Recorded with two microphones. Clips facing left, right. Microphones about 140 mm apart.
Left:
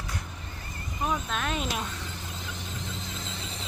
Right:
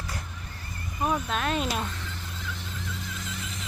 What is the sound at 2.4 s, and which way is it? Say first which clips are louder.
Neigh: right 2 dB; 20° left (ahead or behind).